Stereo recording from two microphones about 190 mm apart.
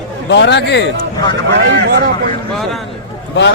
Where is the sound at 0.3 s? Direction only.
65° left (ahead or behind).